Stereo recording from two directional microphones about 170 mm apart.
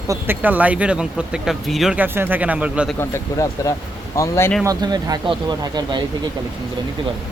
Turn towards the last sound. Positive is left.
turn(degrees=-25)  # may be behind; listen again after turning